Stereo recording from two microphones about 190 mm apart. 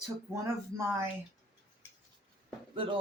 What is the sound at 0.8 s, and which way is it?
Speech, 15° right (ahead or behind).